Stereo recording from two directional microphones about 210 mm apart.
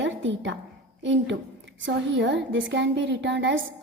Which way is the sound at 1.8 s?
55° right (ahead or behind).